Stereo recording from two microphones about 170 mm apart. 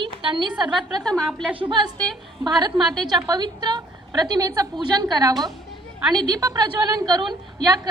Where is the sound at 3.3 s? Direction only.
25° right (ahead or behind).